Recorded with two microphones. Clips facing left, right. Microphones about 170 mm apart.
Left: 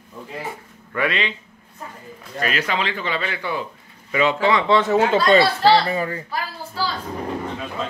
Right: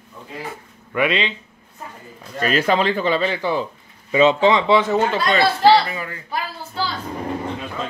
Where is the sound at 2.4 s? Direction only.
40° right (ahead or behind); by 4.6 s 20° right (ahead or behind).